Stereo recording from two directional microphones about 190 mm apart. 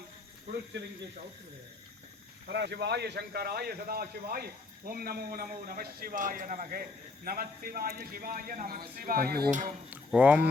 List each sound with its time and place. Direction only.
2.5 s a man's voice: 60° right (ahead or behind); by 9.7 s 45° right (ahead or behind)
9.9 s speech: 10° right (ahead or behind)